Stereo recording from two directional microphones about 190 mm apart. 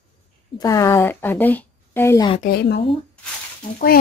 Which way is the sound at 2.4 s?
55° left (ahead or behind).